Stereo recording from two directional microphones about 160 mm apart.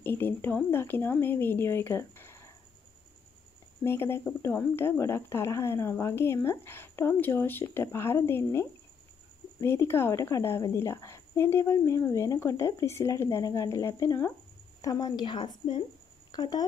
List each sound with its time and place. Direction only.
0.0 s speech: 15° left (ahead or behind)
3.8 s a woman's voice: 15° left (ahead or behind)